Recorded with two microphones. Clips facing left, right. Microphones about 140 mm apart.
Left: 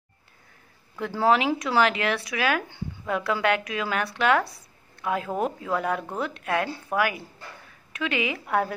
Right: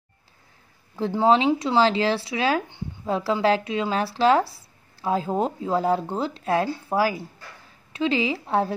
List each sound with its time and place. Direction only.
0.9 s speech: 25° right (ahead or behind)